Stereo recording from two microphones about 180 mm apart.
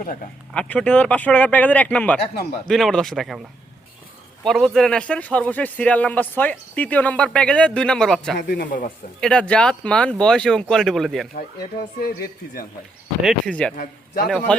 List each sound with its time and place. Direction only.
0.5 s a man's voice: 5° left (ahead or behind)
4.4 s a man's voice: centre (ahead or behind)
8.4 s speech: 55° left (ahead or behind)
9.2 s speech: 5° left (ahead or behind)
11.3 s speech: 55° left (ahead or behind)
13.2 s speech: 5° left (ahead or behind)